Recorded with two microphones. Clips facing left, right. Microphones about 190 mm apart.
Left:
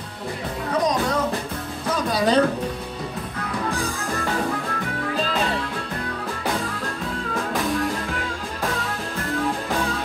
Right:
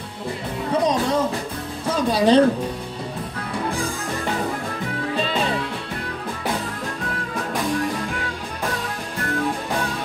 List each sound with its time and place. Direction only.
2.0 s speech: 30° right (ahead or behind)